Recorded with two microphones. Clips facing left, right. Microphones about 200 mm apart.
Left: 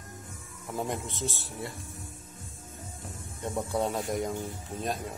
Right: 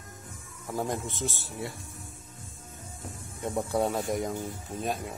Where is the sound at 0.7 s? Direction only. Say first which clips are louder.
Right 2 dB; centre (ahead or behind).